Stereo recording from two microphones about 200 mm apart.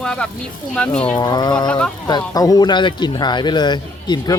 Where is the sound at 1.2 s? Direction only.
20° left (ahead or behind).